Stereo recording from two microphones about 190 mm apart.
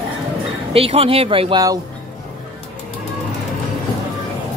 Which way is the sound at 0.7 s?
30° right (ahead or behind).